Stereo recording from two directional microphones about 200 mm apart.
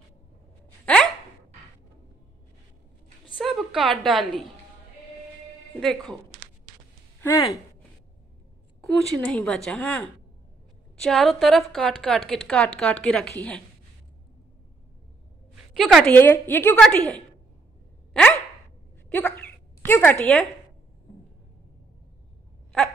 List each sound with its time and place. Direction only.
0.9 s a sound: 5° left (ahead or behind)
3.3 s a woman's voice: centre (ahead or behind)
5.8 s a woman's voice: 5° left (ahead or behind)
7.2 s speech: 15° left (ahead or behind)
8.8 s a woman's voice: 5° left (ahead or behind)
15.7 s a woman's voice: centre (ahead or behind)
19.0 s a sound: 10° left (ahead or behind)